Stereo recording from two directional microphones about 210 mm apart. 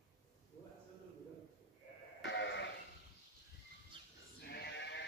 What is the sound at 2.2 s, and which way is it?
Sheep, 60° left (ahead or behind).